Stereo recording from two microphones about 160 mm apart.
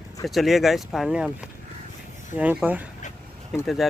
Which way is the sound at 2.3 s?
10° right (ahead or behind).